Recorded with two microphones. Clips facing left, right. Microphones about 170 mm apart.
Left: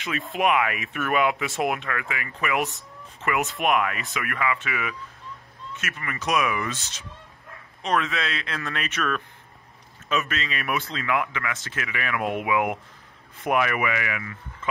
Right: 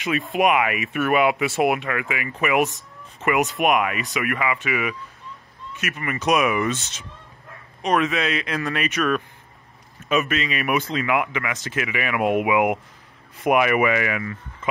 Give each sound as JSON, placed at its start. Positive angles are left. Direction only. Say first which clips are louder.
{"t": 0.0, "sound": "speech", "louder": "right 4 dB", "side_deg": -10}
{"t": 13.7, "sound": "speech", "louder": "right 7 dB", "side_deg": -30}